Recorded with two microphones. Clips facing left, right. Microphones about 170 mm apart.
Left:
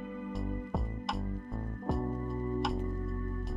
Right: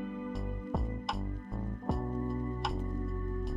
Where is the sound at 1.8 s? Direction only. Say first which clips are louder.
Left 1 dB; centre (ahead or behind).